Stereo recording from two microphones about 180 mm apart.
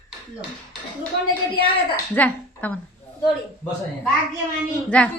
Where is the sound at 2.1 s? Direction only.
10° left (ahead or behind).